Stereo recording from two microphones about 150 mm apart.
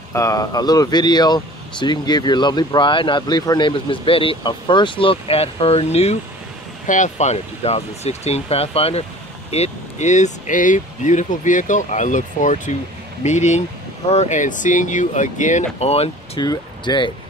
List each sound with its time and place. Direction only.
0.1 s speech: 20° left (ahead or behind); by 16.1 s 45° left (ahead or behind)
16.3 s speech: 30° left (ahead or behind)